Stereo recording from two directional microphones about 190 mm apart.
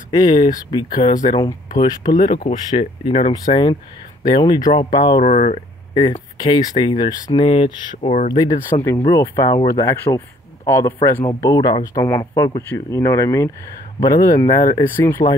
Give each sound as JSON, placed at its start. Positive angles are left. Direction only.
{"t": 0.1, "sound": "speech", "side_deg": 20}
{"t": 5.2, "sound": "speech", "side_deg": 40}
{"t": 5.9, "sound": "speech", "side_deg": 25}